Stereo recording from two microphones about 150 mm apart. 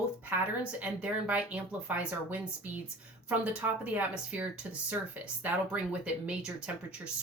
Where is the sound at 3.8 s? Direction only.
10° right (ahead or behind).